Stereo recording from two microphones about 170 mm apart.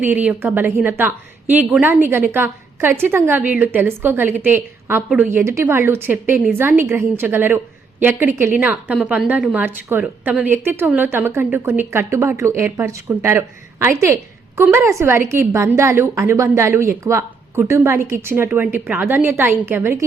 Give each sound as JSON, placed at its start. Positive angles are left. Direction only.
{"t": 0.0, "sound": "a woman's voice", "side_deg": -10}